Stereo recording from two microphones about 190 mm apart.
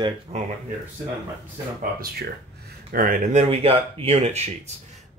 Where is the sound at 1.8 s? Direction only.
55° right (ahead or behind).